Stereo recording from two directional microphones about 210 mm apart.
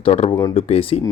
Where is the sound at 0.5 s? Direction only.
30° left (ahead or behind).